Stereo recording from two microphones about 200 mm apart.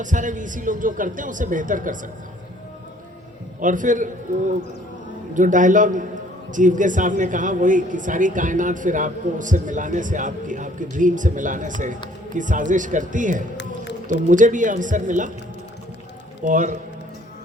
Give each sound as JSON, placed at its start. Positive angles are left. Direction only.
{"t": 0.0, "sound": "speech", "side_deg": -40}
{"t": 3.6, "sound": "speech", "side_deg": -40}
{"t": 16.4, "sound": "speech", "side_deg": -40}